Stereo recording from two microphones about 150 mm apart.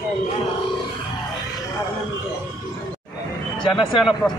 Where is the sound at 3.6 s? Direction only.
30° left (ahead or behind).